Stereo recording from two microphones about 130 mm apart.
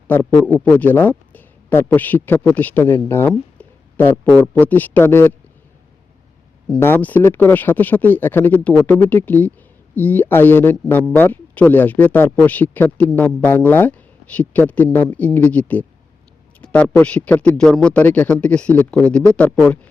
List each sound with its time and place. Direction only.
0.1 s speech: 15° left (ahead or behind)
6.7 s speech: 15° left (ahead or behind)
16.6 s a sound: 10° left (ahead or behind)
17.0 s speech: 10° left (ahead or behind)